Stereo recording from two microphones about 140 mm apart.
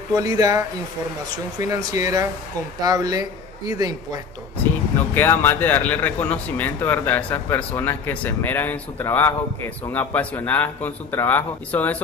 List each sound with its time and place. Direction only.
0.1 s speech: 25° right (ahead or behind)
5.1 s speech: 15° left (ahead or behind)